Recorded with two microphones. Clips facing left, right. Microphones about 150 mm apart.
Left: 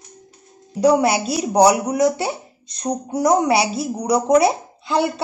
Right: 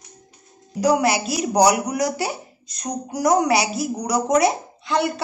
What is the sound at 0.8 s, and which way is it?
A woman's voice, 30° left (ahead or behind).